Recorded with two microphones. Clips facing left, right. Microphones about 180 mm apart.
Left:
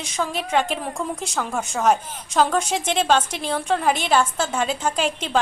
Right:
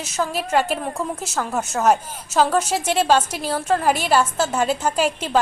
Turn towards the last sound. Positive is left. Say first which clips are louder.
# right 2 dB
turn(degrees=-10)  # may be behind; listen again after turning